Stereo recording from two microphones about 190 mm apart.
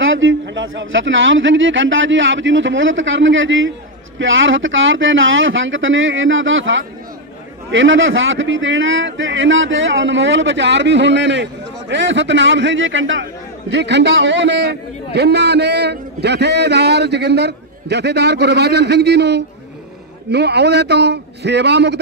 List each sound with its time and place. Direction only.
0.0 s a man's voice: 90° right
13.7 s a man's voice: 65° right (ahead or behind)